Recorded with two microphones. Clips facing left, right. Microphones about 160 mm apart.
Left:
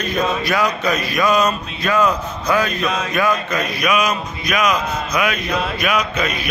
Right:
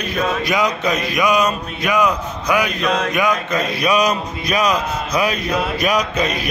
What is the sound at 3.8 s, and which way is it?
Speech, 35° right (ahead or behind).